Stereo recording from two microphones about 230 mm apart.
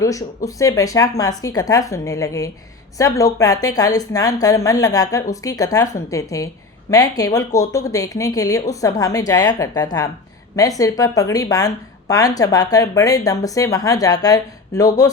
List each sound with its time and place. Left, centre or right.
0.0 s a woman's voice: centre